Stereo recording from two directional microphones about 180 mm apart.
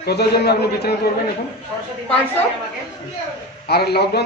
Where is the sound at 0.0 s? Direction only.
65° left (ahead or behind).